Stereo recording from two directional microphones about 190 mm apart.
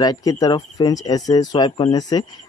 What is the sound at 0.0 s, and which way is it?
Speech, 20° left (ahead or behind).